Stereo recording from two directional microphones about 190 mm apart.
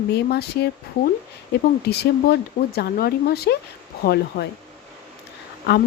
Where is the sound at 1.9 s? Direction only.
55° left (ahead or behind).